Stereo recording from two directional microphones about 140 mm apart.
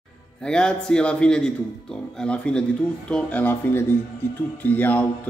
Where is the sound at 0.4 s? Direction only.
5° left (ahead or behind).